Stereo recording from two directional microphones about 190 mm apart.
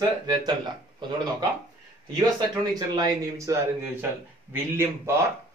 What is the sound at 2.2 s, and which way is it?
A man's voice, 20° right (ahead or behind).